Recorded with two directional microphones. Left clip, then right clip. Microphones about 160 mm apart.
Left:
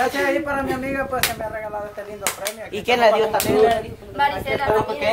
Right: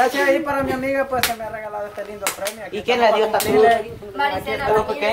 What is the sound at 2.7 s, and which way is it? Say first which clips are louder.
Speech: left 1 dB; 65° left (ahead or behind).